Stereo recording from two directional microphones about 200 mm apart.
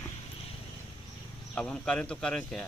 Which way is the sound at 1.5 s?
5° left (ahead or behind).